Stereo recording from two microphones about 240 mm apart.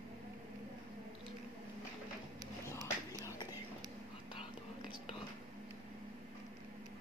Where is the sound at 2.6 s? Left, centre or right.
Centre.